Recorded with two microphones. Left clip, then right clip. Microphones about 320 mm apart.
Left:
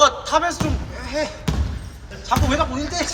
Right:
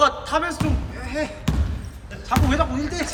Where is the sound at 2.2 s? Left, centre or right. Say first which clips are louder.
Left 2 dB; centre.